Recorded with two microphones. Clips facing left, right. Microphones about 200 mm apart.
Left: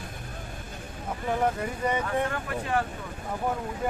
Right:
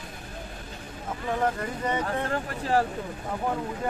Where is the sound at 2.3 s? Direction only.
35° right (ahead or behind).